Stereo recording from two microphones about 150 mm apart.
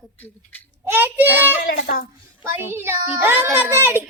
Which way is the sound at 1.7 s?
65° left (ahead or behind).